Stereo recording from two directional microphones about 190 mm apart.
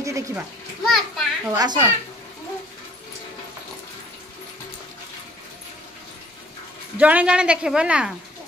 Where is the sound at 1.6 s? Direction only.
20° right (ahead or behind).